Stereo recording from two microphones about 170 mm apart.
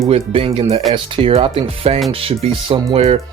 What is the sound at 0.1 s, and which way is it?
Speech, 35° right (ahead or behind).